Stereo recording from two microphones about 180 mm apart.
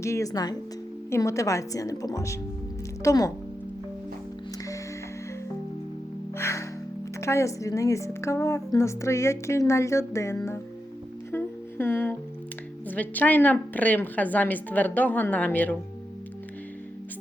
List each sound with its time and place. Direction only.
0.0 s a woman's voice: 15° left (ahead or behind)
6.3 s music: 15° left (ahead or behind)
7.2 s a woman's voice: 15° left (ahead or behind)
11.3 s music: 10° left (ahead or behind)
12.9 s a woman's voice: 10° left (ahead or behind)